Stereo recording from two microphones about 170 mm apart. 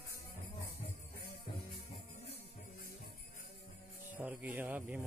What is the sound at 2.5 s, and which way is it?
Music, 60° left (ahead or behind).